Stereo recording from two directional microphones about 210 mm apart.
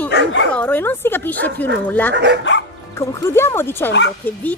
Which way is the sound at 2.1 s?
55° right (ahead or behind).